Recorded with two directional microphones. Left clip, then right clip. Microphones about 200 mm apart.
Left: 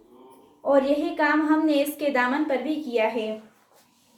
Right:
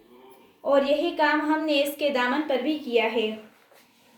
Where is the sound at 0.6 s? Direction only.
30° right (ahead or behind).